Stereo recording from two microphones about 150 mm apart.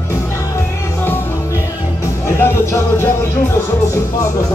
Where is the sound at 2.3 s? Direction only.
15° left (ahead or behind).